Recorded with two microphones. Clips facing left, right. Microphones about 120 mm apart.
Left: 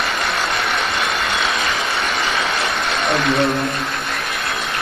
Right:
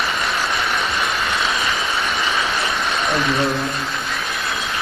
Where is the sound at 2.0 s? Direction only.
90° left.